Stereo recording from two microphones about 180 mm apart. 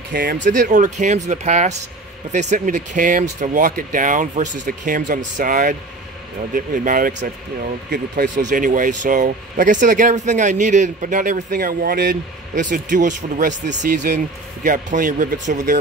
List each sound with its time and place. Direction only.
0.1 s speech: 50° right (ahead or behind)